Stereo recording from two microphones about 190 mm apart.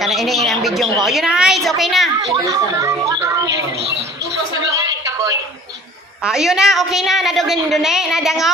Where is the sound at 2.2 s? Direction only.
20° right (ahead or behind).